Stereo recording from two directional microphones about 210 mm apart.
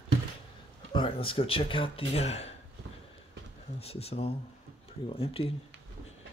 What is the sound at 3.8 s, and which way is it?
Speech, 30° left (ahead or behind).